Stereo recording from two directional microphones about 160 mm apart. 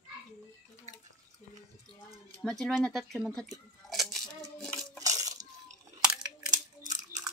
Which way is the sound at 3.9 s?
Centre (ahead or behind).